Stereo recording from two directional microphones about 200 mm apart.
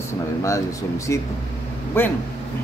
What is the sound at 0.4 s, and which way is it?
A man's voice, 15° left (ahead or behind).